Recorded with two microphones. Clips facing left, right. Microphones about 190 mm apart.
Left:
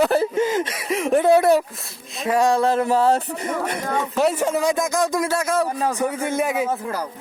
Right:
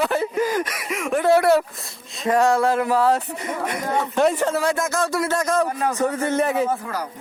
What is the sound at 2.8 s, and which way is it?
Music, 25° left (ahead or behind).